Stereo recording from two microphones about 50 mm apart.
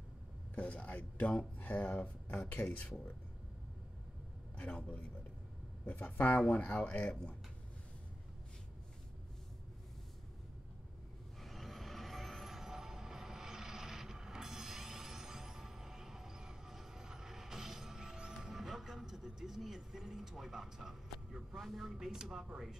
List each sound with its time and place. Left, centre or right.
0.6 s speech: left
4.6 s speech: left
5.9 s speech: left
11.4 s vehicle: centre
21.5 s speech: centre
21.9 s speech: centre